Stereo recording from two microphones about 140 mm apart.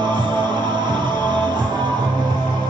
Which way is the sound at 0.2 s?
30° right (ahead or behind).